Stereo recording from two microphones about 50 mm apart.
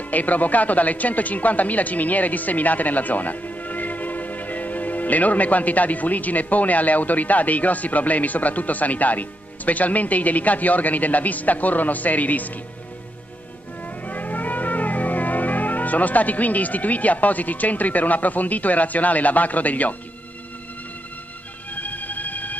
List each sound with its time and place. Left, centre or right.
0.1 s speech: left
13.8 s music: left
21.7 s train: left